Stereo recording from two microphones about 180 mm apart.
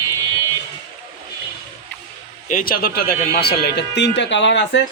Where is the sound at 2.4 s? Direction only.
50° left (ahead or behind); by 4.8 s 80° left.